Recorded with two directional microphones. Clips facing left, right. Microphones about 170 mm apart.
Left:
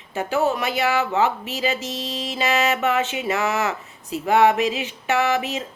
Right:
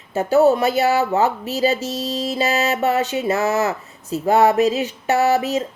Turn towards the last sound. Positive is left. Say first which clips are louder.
# right 5 dB
turn(degrees=-40)  # may be behind; listen again after turning